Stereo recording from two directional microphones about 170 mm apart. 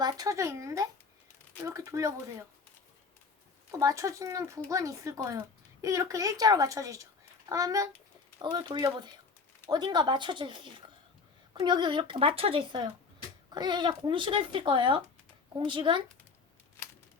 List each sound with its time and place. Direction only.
0.0 s speech: 25° right (ahead or behind)
3.7 s speech: 20° right (ahead or behind)